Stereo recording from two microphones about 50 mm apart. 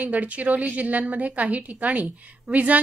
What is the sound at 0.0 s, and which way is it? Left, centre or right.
A woman's voice, right.